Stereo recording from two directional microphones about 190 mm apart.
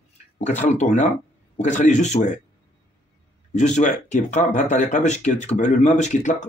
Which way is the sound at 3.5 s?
40° left (ahead or behind).